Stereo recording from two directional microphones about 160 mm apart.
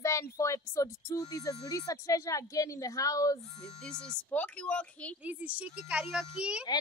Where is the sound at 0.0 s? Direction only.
20° left (ahead or behind).